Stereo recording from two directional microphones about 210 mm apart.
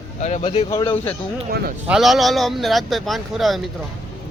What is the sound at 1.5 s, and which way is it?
Speech, 45° right (ahead or behind).